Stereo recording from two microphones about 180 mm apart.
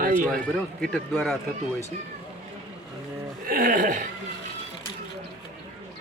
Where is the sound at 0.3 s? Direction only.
Centre (ahead or behind).